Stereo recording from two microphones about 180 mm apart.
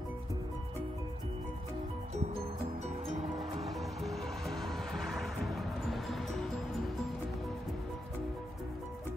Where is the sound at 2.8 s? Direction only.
35° right (ahead or behind).